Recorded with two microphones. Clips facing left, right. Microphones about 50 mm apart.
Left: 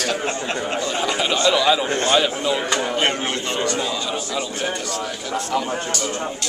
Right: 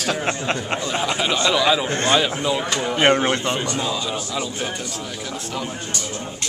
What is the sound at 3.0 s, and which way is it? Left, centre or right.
Speech, right.